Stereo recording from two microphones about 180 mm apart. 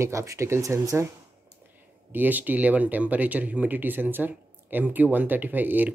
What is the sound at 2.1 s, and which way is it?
Speech, 10° right (ahead or behind).